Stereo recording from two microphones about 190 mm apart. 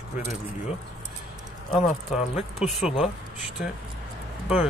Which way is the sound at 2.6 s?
Centre (ahead or behind).